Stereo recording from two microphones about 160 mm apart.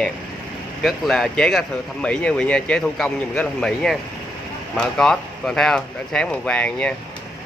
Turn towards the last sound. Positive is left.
turn(degrees=5)  # may be behind; listen again after turning